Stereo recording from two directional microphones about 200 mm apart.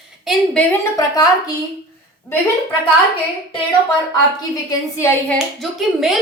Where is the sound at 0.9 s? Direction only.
20° left (ahead or behind).